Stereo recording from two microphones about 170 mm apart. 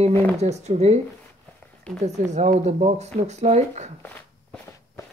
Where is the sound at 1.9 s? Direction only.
5° left (ahead or behind).